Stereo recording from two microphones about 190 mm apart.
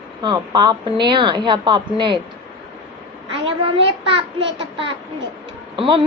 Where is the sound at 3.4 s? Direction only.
30° right (ahead or behind).